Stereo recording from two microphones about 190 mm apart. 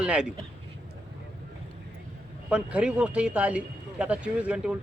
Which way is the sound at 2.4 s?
5° right (ahead or behind).